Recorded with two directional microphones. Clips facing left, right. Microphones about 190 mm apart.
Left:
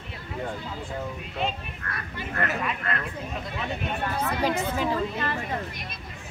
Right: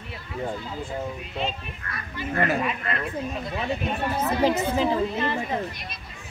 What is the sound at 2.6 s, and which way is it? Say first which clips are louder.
Speech: right 2 dB; 10° right (ahead or behind).